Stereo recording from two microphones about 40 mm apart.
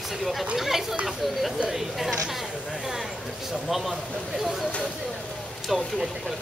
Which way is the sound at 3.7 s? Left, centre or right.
Centre.